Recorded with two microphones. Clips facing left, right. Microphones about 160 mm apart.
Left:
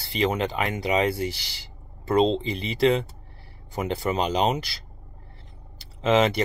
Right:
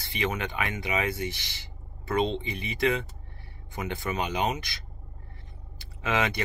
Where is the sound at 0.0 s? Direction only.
30° left (ahead or behind).